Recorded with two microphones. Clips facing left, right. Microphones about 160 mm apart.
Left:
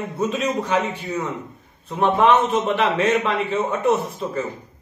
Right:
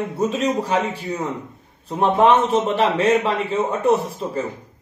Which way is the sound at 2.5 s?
30° right (ahead or behind).